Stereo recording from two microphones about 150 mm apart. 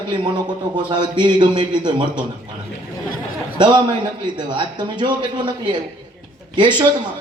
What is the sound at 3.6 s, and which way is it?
A man's voice, 30° right (ahead or behind).